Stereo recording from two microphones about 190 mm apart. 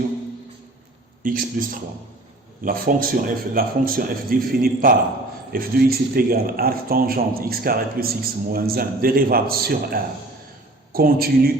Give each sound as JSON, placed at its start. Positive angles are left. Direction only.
{"t": 1.2, "sound": "a man's voice", "side_deg": -45}